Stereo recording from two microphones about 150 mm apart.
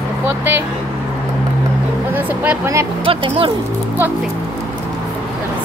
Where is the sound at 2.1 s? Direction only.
10° right (ahead or behind).